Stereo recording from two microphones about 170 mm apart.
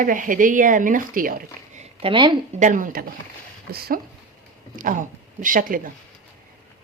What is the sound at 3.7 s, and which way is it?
Speech, 65° right (ahead or behind).